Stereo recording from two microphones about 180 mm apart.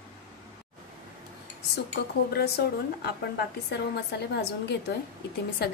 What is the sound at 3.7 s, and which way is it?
Speech, 65° left (ahead or behind).